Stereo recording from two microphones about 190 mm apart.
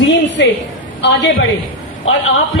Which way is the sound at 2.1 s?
90° left.